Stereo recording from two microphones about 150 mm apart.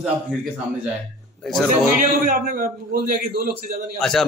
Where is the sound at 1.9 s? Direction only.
70° right (ahead or behind); by 3.8 s 90° right.